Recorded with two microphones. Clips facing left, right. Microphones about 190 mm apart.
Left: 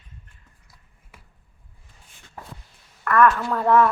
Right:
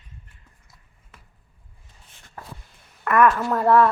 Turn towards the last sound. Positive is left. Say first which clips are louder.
# right 1 dB
turn(degrees=-5)  # may be behind; listen again after turning